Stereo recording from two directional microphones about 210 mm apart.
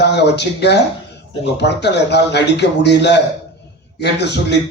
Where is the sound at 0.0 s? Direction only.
55° left (ahead or behind).